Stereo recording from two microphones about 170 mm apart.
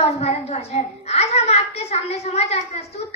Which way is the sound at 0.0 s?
40° left (ahead or behind).